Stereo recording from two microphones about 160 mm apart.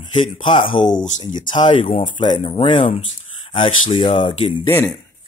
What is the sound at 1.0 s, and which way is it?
Speech, 50° left (ahead or behind).